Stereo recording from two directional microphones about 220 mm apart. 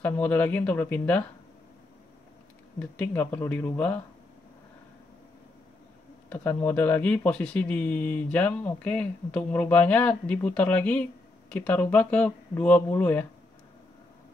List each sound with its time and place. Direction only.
0.0 s speech: 5° left (ahead or behind)
2.8 s speech: 5° left (ahead or behind)
6.2 s speech: 5° left (ahead or behind)